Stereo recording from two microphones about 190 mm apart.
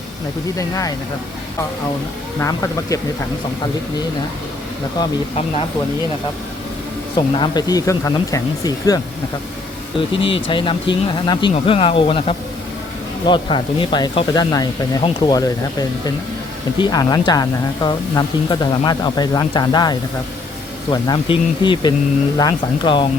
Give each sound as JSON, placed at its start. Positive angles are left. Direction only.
{"t": 0.6, "sound": "speech", "side_deg": 15}
{"t": 2.4, "sound": "speech", "side_deg": 15}
{"t": 7.2, "sound": "speech", "side_deg": 25}
{"t": 10.2, "sound": "speech", "side_deg": 30}
{"t": 16.7, "sound": "speech", "side_deg": 20}